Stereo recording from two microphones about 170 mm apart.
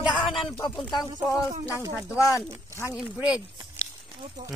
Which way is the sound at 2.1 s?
20° left (ahead or behind).